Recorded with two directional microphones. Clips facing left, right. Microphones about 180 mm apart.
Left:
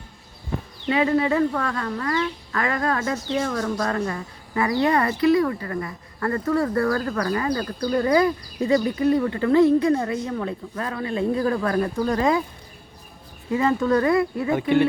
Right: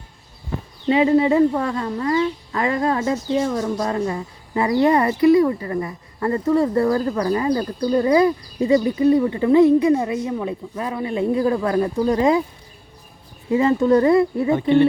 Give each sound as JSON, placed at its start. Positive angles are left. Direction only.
{"t": 0.9, "sound": "speech", "side_deg": -25}
{"t": 13.5, "sound": "speech", "side_deg": -25}